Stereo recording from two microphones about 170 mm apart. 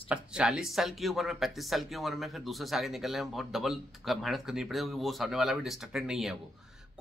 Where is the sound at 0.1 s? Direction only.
5° right (ahead or behind).